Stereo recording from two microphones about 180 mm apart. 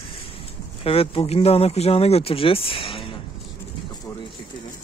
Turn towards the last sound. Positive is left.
turn(degrees=30)  # may be behind; listen again after turning